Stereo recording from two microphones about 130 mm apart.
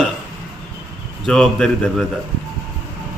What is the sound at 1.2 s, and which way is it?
Speech, 5° left (ahead or behind).